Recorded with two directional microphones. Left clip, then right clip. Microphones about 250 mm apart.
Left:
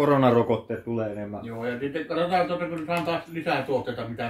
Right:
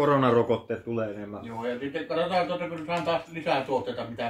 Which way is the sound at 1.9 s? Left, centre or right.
Right.